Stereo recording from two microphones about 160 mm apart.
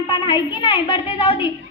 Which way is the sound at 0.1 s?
30° left (ahead or behind).